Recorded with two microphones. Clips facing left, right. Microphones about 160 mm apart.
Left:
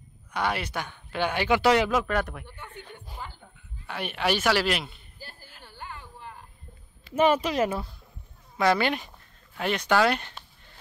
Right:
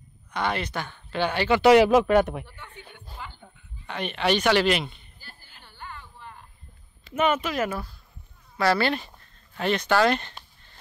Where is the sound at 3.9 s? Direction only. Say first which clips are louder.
Right 3 dB; 10° left (ahead or behind).